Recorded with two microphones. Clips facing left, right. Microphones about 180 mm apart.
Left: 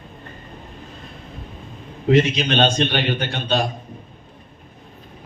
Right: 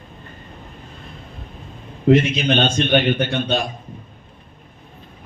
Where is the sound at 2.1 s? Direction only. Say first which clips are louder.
Right 2 dB; 55° right (ahead or behind).